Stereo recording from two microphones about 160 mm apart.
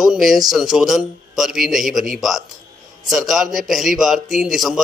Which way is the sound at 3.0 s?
Centre (ahead or behind).